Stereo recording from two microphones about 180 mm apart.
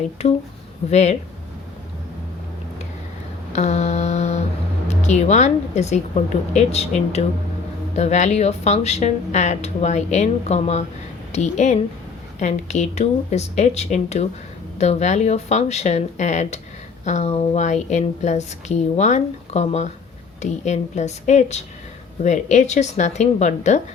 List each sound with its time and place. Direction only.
0.2 s speech: 35° left (ahead or behind)
3.5 s mantra: 40° left (ahead or behind)
4.9 s speech: 40° left (ahead or behind)